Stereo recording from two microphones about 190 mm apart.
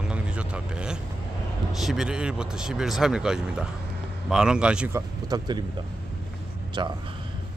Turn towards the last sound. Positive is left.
turn(degrees=-25)  # may be behind; listen again after turning